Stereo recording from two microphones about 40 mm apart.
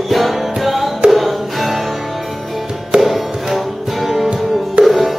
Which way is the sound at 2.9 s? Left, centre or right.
Centre.